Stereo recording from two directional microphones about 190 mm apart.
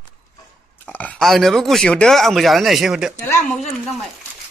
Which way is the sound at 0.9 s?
5° left (ahead or behind).